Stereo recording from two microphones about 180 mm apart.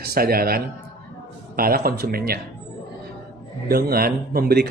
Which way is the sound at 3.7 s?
60° right (ahead or behind).